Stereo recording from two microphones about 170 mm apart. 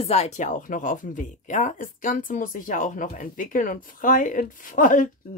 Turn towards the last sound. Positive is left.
turn(degrees=50)  # may be behind; listen again after turning